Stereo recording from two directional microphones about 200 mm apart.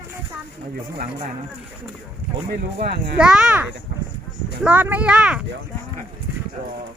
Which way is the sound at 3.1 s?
5° right (ahead or behind).